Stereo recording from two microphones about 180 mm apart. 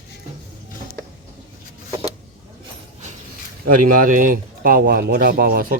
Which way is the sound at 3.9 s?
50° right (ahead or behind).